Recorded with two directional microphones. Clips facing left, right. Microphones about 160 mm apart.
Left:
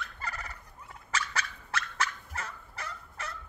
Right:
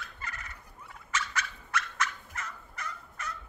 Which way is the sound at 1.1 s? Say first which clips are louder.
Even; 30° left (ahead or behind).